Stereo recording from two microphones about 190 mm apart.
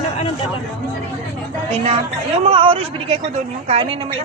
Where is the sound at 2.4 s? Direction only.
30° right (ahead or behind).